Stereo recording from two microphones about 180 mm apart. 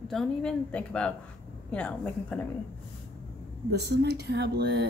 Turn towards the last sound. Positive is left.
turn(degrees=-70)  # may be behind; listen again after turning